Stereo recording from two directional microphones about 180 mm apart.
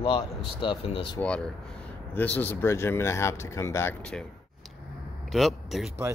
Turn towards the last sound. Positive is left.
turn(degrees=0)  # may be behind; listen again after turning